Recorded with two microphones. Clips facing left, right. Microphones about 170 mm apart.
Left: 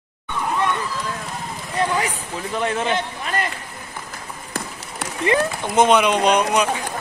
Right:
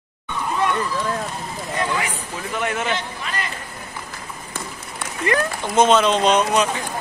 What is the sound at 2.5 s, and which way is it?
Speech, 30° left (ahead or behind).